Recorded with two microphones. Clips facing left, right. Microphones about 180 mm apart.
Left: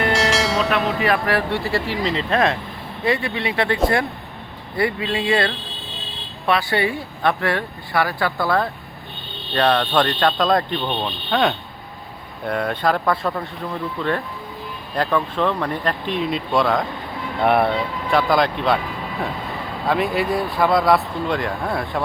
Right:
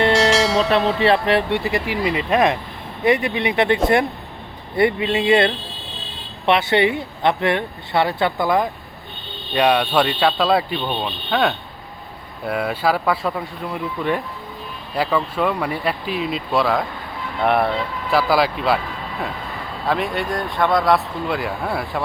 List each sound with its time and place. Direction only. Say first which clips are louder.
0.1 s bell: right 3 dB; centre (ahead or behind)
0.9 s speech: right 3 dB; 25° right (ahead or behind)
4.8 s speech: right 4 dB; 25° right (ahead or behind); by 18.8 s 5° right (ahead or behind)
19.8 s speech: left 2 dB; centre (ahead or behind)